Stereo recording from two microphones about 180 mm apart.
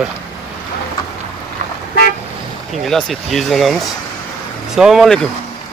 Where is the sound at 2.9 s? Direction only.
Centre (ahead or behind).